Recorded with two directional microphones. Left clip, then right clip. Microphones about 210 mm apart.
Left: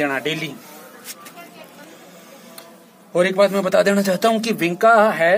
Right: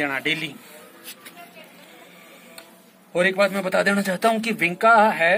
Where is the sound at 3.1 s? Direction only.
25° left (ahead or behind).